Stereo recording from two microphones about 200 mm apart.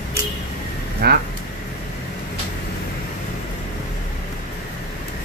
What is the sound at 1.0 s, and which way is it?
Speech, 55° right (ahead or behind).